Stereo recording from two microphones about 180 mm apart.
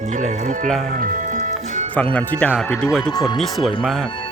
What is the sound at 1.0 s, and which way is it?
Music, 45° right (ahead or behind).